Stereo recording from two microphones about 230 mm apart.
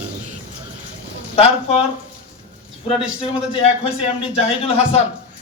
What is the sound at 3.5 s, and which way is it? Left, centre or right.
A man's voice, left.